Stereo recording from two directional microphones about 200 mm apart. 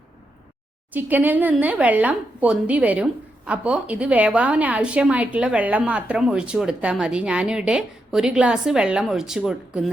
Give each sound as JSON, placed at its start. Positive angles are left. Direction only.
{"t": 0.9, "sound": "speech", "side_deg": -10}